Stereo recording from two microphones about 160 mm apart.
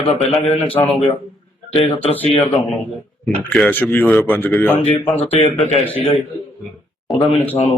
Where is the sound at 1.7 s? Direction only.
35° left (ahead or behind).